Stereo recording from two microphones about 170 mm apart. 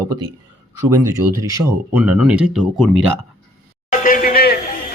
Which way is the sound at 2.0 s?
5° right (ahead or behind).